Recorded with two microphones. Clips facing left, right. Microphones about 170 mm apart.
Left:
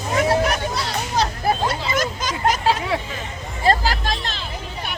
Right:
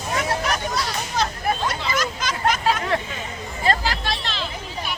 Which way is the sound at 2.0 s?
45° left (ahead or behind).